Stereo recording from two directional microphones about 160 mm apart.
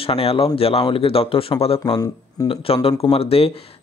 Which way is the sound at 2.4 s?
35° left (ahead or behind).